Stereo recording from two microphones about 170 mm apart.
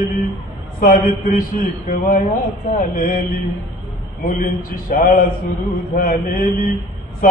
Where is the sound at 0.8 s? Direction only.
55° left (ahead or behind).